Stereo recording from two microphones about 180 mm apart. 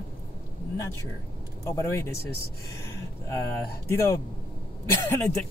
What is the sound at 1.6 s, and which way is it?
Speech, 15° left (ahead or behind).